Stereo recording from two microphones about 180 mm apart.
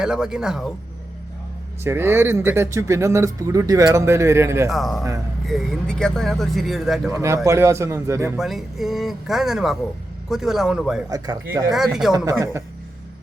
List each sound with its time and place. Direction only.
0.0 s speech: 5° right (ahead or behind)
1.8 s speech: 15° right (ahead or behind)
4.7 s speech: centre (ahead or behind)
7.1 s speech: 15° right (ahead or behind)
8.4 s speech: centre (ahead or behind)
11.1 s speech: 20° right (ahead or behind)
11.7 s speech: centre (ahead or behind)
12.1 s speech: 20° right (ahead or behind)